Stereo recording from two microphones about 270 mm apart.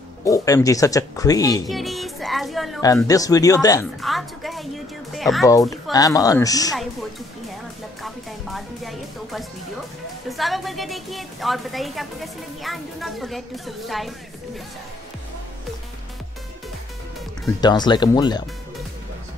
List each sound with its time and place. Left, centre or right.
0.2 s speech: centre
1.7 s music: centre
2.8 s speech: centre
4.0 s music: centre
5.1 s speech: centre
5.5 s speech: centre
8.0 s music: centre
10.3 s a woman's voice: centre
17.6 s speech: centre